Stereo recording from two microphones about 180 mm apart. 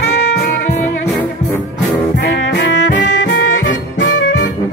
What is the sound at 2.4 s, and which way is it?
Music, 75° left (ahead or behind).